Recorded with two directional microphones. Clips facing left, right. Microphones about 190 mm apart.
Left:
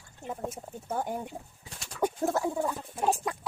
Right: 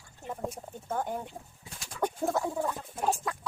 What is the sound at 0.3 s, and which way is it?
Chicken, 5° left (ahead or behind).